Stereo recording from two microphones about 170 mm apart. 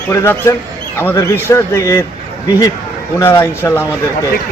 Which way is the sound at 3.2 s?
15° left (ahead or behind).